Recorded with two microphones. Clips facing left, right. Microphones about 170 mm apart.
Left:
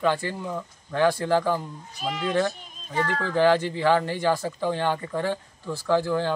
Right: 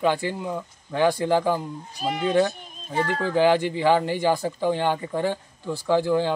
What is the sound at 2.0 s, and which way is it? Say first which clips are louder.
Speech: right 3 dB; 40° right (ahead or behind).